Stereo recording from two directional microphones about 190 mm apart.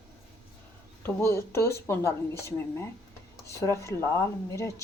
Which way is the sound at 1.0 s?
15° left (ahead or behind).